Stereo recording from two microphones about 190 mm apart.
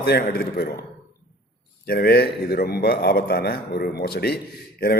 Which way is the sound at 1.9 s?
55° left (ahead or behind).